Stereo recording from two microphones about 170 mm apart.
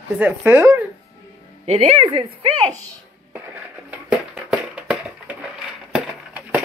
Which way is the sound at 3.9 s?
5° right (ahead or behind).